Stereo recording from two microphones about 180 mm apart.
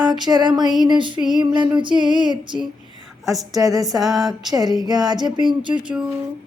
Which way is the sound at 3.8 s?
Centre (ahead or behind).